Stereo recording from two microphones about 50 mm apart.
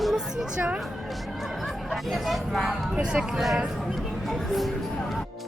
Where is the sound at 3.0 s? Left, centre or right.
Centre.